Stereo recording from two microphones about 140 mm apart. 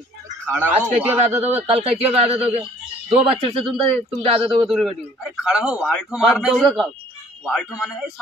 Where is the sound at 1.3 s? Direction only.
50° right (ahead or behind).